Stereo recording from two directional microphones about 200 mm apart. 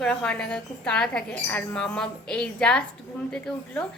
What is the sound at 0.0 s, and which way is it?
Speech, 5° left (ahead or behind).